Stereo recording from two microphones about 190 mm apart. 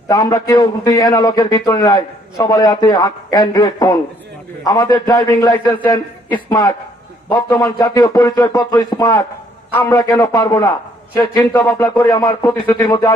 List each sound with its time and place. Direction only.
0.1 s a man's voice: 20° left (ahead or behind)